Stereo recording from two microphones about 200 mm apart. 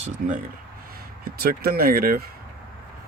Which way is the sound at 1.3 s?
50° right (ahead or behind).